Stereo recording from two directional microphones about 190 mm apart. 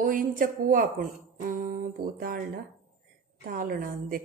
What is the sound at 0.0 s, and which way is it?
Speech, 45° right (ahead or behind).